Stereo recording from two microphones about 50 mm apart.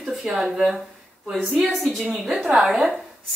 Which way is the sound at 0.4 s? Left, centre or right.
Centre.